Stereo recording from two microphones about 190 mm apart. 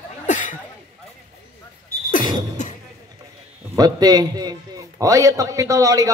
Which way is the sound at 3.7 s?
20° right (ahead or behind).